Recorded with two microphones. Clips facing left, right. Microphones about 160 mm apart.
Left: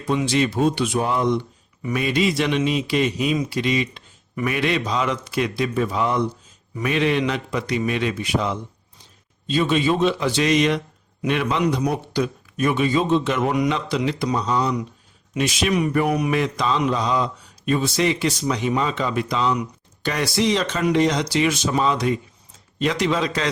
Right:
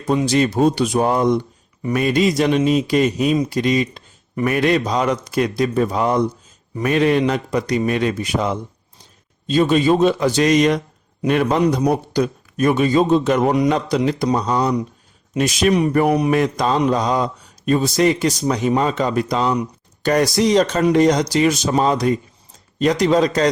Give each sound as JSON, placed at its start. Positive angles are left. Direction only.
{"t": 0.0, "sound": "mantra", "side_deg": -40}
{"t": 6.7, "sound": "a man's voice", "side_deg": -45}
{"t": 9.5, "sound": "mantra", "side_deg": -40}